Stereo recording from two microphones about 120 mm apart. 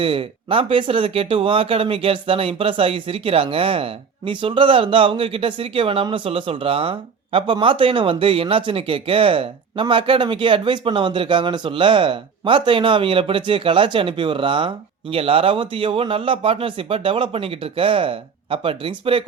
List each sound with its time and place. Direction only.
0.0 s speech: 45° right (ahead or behind)